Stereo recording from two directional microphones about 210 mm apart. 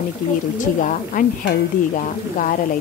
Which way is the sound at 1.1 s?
40° left (ahead or behind).